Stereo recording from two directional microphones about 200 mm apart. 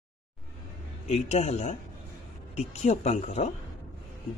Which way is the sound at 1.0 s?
35° left (ahead or behind).